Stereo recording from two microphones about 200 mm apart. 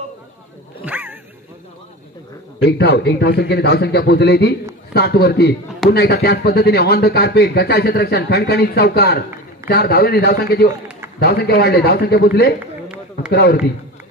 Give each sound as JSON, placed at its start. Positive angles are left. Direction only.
{"t": 0.8, "sound": "dog", "side_deg": -10}
{"t": 2.6, "sound": "a man's voice", "side_deg": 55}
{"t": 12.8, "sound": "run", "side_deg": -5}
{"t": 13.3, "sound": "speech", "side_deg": 55}